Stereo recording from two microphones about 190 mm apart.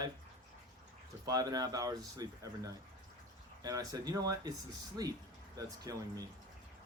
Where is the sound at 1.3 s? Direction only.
20° right (ahead or behind).